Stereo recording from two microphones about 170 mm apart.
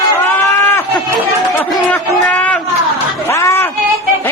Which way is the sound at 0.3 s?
10° left (ahead or behind).